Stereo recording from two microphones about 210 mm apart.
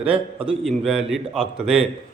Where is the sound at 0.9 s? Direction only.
Centre (ahead or behind).